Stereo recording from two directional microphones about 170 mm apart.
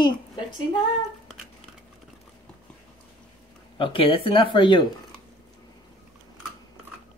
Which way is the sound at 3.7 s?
30° left (ahead or behind).